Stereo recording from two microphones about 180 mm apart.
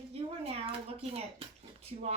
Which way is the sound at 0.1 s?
35° right (ahead or behind).